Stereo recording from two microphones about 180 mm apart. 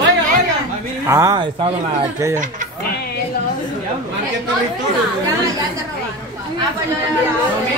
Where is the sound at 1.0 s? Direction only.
15° right (ahead or behind).